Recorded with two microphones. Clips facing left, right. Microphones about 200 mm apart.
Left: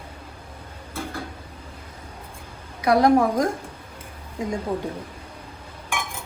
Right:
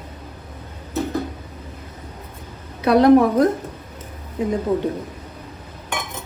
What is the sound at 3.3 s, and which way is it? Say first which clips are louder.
Speech: right 6 dB; 10° left (ahead or behind).